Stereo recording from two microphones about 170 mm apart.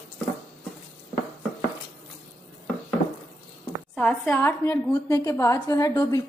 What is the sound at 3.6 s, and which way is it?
A woman's voice, 5° left (ahead or behind).